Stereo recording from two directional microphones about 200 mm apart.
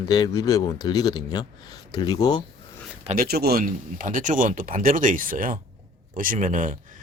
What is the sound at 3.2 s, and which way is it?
A man's voice, 50° right (ahead or behind).